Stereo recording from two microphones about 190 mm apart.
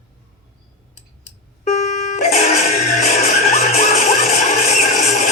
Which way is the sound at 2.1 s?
40° left (ahead or behind).